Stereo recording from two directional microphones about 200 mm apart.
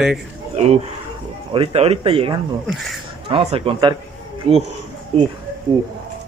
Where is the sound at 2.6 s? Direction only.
Centre (ahead or behind).